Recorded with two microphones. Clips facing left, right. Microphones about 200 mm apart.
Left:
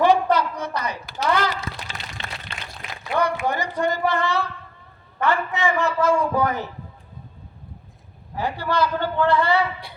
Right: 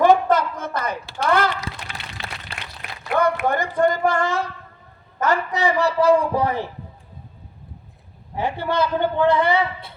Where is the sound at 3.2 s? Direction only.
50° right (ahead or behind).